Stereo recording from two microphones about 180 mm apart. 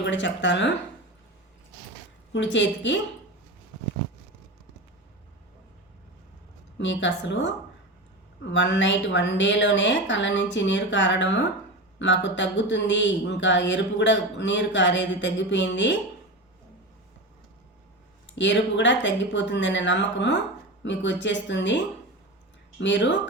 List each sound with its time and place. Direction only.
0.0 s speech: 80° left
2.3 s a woman's voice: 85° left
6.7 s a woman's voice: 90° left
18.3 s speech: 90° left